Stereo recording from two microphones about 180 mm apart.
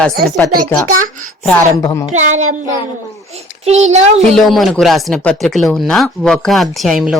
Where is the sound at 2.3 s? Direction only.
45° right (ahead or behind).